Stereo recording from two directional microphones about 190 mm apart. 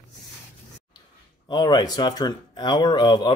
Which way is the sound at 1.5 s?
20° left (ahead or behind).